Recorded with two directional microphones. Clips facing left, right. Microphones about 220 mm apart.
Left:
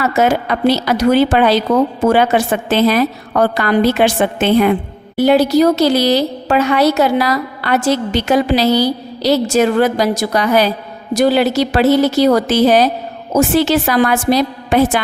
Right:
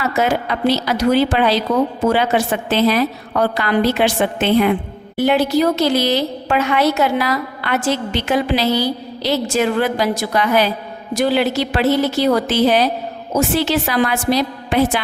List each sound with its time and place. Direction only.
0.0 s a woman's voice: 50° left (ahead or behind)